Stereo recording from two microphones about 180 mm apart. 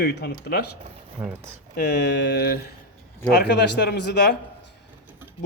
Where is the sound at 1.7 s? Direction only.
65° left (ahead or behind).